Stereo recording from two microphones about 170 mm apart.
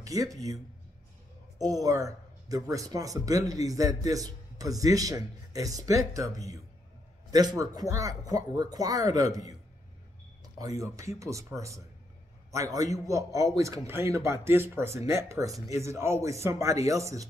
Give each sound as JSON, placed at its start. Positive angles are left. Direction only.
{"t": 0.0, "sound": "speech", "side_deg": -20}
{"t": 1.6, "sound": "speech", "side_deg": -20}